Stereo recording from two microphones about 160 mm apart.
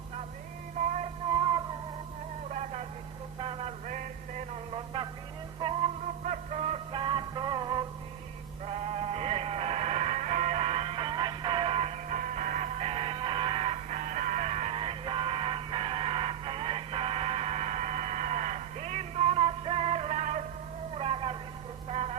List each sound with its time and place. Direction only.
0.8 s music: 45° right (ahead or behind)
1.3 s music: 25° right (ahead or behind)
2.5 s vehicle: 45° right (ahead or behind)
3.3 s music: 35° right (ahead or behind); by 4.4 s 50° right (ahead or behind)
4.9 s a sound: 30° right (ahead or behind)
5.5 s music: 35° right (ahead or behind)
6.2 s music: 50° right (ahead or behind); by 7.9 s 25° right (ahead or behind)
8.6 s music: 40° right (ahead or behind)
20.9 s a sound: 40° right (ahead or behind)
21.8 s music: 40° right (ahead or behind)